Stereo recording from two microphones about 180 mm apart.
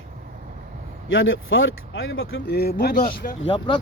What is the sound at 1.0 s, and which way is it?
Speech, 90° left.